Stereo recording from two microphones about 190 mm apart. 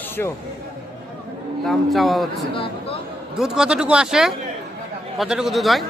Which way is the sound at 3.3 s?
Centre (ahead or behind).